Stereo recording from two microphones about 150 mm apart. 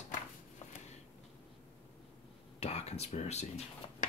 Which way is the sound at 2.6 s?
45° left (ahead or behind).